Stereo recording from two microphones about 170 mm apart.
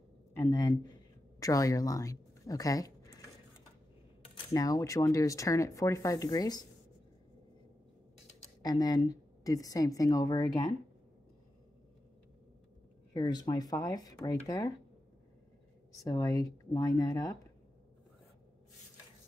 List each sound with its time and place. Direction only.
0.3 s speech: 15° left (ahead or behind)
4.5 s speech: 20° left (ahead or behind)
8.6 s speech: 20° left (ahead or behind)
13.1 s speech: 25° left (ahead or behind)
16.0 s speech: 20° left (ahead or behind)